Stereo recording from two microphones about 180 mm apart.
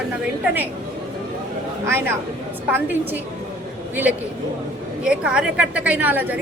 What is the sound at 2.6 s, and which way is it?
Speech, 10° right (ahead or behind).